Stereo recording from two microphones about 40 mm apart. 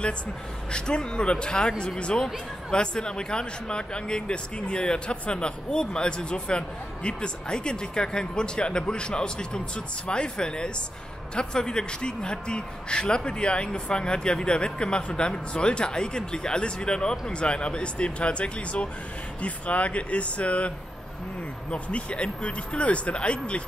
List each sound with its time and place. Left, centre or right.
0.7 s a man's voice: left